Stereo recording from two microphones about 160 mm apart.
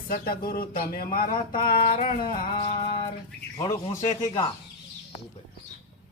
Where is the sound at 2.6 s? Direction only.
35° left (ahead or behind).